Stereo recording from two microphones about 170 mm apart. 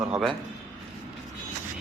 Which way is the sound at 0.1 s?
Centre (ahead or behind).